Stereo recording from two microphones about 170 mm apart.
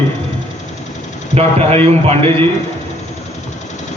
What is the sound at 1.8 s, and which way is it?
Speech, 35° right (ahead or behind).